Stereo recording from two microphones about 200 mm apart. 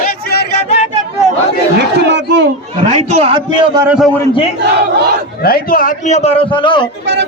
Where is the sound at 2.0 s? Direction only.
60° right (ahead or behind).